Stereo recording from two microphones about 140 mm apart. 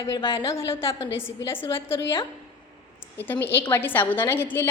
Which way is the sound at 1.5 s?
20° left (ahead or behind).